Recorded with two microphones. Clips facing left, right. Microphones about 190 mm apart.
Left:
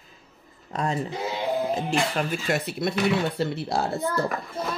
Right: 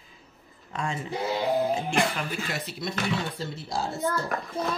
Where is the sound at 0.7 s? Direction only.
40° left (ahead or behind).